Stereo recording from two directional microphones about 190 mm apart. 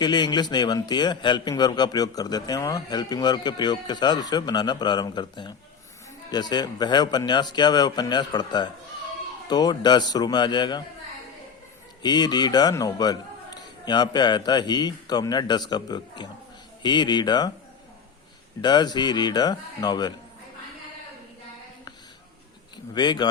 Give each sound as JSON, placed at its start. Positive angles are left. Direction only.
{"t": 0.0, "sound": "a man's voice", "side_deg": 25}
{"t": 12.0, "sound": "a man's voice", "side_deg": 20}
{"t": 18.6, "sound": "a man's voice", "side_deg": 20}
{"t": 23.0, "sound": "a man's voice", "side_deg": 20}